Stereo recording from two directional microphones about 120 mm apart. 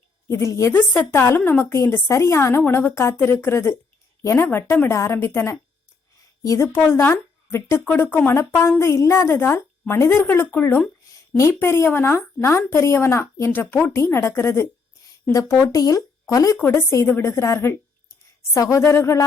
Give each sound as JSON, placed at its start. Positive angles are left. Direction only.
{"t": 0.3, "sound": "a woman's voice", "side_deg": 25}